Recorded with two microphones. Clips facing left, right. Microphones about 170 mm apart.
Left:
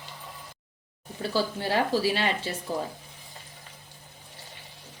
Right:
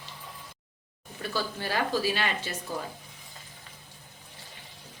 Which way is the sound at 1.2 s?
30° left (ahead or behind).